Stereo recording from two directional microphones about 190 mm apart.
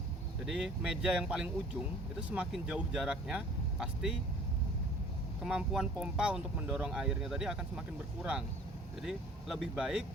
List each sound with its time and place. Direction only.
0.4 s speech: 5° right (ahead or behind)
5.4 s speech: 5° right (ahead or behind)